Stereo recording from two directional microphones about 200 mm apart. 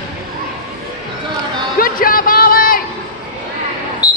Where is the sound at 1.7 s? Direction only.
45° left (ahead or behind).